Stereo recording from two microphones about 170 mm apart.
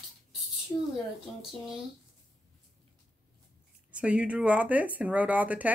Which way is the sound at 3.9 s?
5° right (ahead or behind).